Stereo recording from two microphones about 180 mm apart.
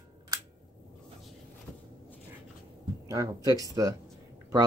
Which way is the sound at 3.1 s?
20° right (ahead or behind).